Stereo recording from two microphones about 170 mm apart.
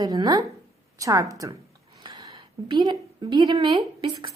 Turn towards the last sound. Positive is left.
turn(degrees=-30)  # may be behind; listen again after turning